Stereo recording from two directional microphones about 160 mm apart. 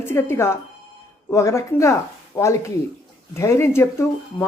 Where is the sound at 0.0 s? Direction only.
15° left (ahead or behind).